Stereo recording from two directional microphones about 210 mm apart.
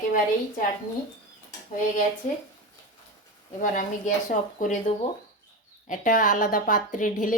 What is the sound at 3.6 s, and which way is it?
A woman's voice, 40° left (ahead or behind).